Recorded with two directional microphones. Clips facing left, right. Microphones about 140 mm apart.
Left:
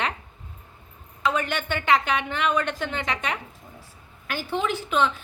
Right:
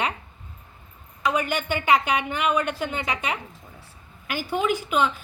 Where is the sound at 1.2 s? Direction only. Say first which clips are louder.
Right 1 dB; 10° right (ahead or behind).